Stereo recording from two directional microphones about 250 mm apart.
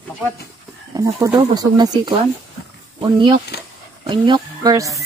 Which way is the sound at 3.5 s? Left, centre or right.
Left.